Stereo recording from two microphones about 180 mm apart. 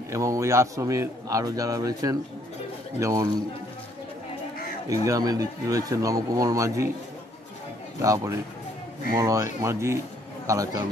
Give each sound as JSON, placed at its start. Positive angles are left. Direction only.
{"t": 0.1, "sound": "a man's voice", "side_deg": -15}
{"t": 4.8, "sound": "speech", "side_deg": -20}
{"t": 8.0, "sound": "a man's voice", "side_deg": -20}